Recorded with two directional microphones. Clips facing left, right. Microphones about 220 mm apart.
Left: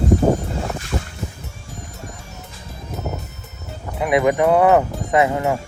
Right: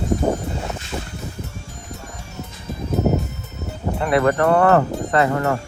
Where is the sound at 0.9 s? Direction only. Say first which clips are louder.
Left 3 dB; centre (ahead or behind).